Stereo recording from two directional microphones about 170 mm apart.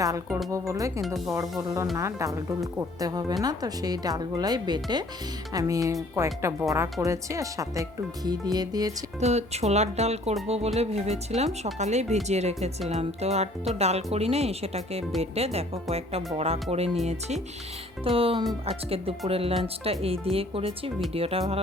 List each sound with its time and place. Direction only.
0.3 s speech: centre (ahead or behind)
0.7 s music: 20° right (ahead or behind)
1.0 s speech: centre (ahead or behind)
1.3 s music: 20° right (ahead or behind)
3.0 s speech: 20° right (ahead or behind)
9.2 s speech: 40° right (ahead or behind)